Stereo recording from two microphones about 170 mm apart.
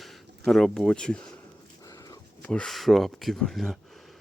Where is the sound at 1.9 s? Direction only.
20° left (ahead or behind).